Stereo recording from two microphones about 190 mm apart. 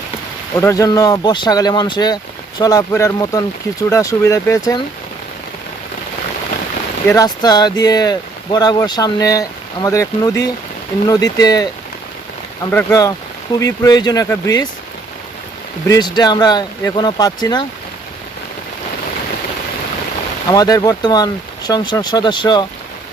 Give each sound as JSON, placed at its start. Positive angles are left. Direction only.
{"t": 0.6, "sound": "speech", "side_deg": 15}
{"t": 7.1, "sound": "speech", "side_deg": 20}
{"t": 12.7, "sound": "speech", "side_deg": 15}
{"t": 15.9, "sound": "speech", "side_deg": 20}
{"t": 20.5, "sound": "speech", "side_deg": 20}